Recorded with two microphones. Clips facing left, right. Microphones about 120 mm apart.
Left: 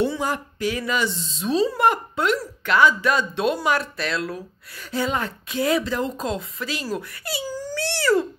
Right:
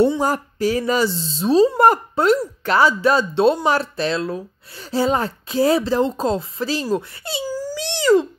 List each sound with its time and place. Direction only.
0.2 s speech: 40° right (ahead or behind)
7.4 s wail: 10° right (ahead or behind)